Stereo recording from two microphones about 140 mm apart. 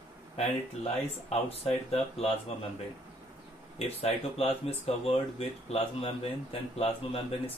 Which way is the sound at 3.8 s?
45° left (ahead or behind).